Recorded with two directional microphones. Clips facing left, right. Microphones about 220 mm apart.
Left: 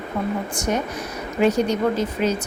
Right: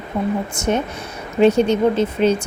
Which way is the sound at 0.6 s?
25° right (ahead or behind).